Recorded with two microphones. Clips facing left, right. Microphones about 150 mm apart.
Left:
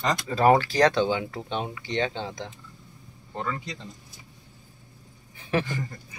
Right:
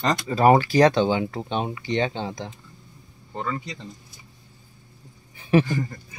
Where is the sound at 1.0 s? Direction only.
25° right (ahead or behind).